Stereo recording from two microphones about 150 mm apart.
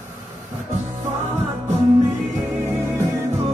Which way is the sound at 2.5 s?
15° right (ahead or behind).